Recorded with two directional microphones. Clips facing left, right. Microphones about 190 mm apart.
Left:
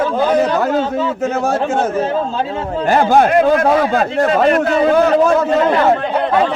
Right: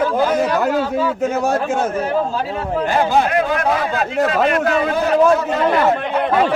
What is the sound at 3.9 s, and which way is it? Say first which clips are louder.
Speech: left 3 dB; 35° left (ahead or behind).